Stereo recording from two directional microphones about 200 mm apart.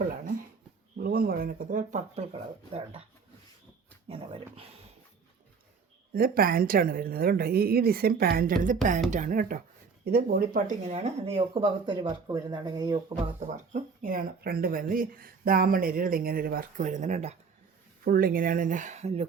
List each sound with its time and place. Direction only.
0.9 s speech: 50° right (ahead or behind); by 3.0 s 30° right (ahead or behind)
4.1 s speech: 30° right (ahead or behind)
6.1 s speech: 45° right (ahead or behind); by 13.1 s 20° right (ahead or behind)
13.4 s speech: 35° right (ahead or behind)
18.0 s speech: 45° right (ahead or behind)